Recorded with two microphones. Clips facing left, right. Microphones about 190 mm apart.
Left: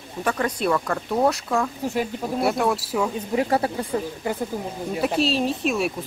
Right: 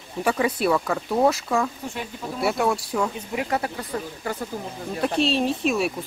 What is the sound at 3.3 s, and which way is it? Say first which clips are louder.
Speech: left 5 dB; 30° left (ahead or behind).